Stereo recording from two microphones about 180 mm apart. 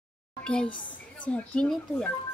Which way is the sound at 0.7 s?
25° left (ahead or behind).